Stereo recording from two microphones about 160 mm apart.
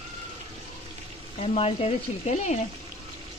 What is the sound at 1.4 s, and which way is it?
Speech, 40° left (ahead or behind).